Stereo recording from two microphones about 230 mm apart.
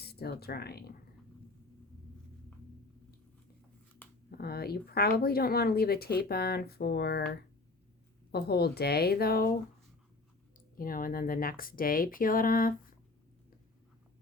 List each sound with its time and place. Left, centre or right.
0.0 s speech: left
4.3 s speech: left
10.8 s speech: left